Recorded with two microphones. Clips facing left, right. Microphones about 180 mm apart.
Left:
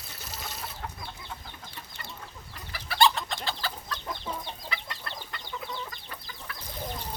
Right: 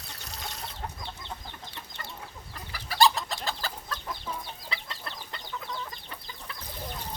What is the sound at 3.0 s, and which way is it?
Bird, 40° right (ahead or behind).